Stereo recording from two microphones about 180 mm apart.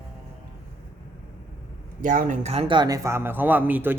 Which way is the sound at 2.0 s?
45° right (ahead or behind).